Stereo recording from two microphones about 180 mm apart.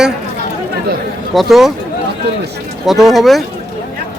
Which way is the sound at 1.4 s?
Centre (ahead or behind).